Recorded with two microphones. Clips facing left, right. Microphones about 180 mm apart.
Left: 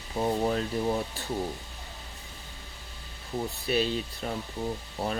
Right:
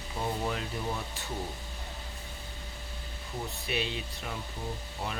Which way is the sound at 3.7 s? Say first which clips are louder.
Left 7 dB; 40° left (ahead or behind).